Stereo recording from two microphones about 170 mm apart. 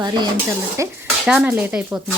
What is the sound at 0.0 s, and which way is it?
Speech, 20° right (ahead or behind).